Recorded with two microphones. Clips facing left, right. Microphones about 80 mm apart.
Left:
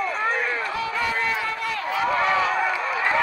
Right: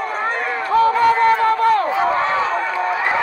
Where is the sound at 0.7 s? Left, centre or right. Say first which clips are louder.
Right 12 dB; right.